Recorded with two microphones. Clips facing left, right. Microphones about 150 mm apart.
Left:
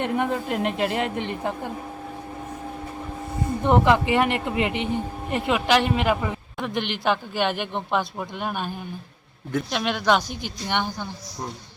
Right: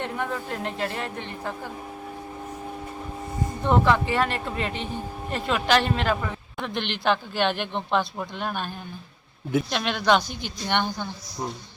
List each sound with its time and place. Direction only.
0.0 s speech: 15° left (ahead or behind)
3.6 s speech: 15° left (ahead or behind)